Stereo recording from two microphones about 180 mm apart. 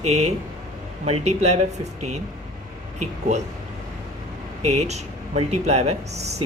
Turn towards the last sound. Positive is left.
turn(degrees=-35)  # may be behind; listen again after turning